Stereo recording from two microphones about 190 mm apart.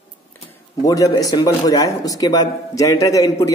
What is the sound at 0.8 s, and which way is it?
A man's voice, 20° left (ahead or behind).